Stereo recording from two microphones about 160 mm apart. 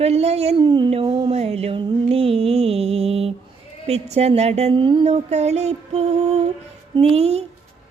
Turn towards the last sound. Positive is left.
turn(degrees=-40)  # may be behind; listen again after turning